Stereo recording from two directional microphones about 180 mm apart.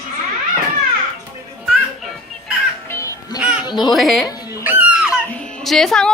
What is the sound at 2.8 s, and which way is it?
Music, 15° left (ahead or behind).